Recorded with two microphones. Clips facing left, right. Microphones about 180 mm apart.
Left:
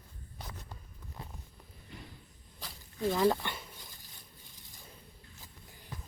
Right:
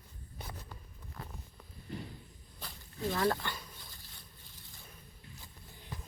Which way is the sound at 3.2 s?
20° left (ahead or behind).